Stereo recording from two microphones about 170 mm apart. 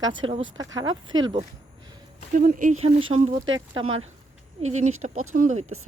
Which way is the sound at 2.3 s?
50° right (ahead or behind).